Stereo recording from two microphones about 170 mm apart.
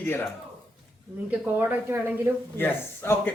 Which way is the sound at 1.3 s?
10° right (ahead or behind).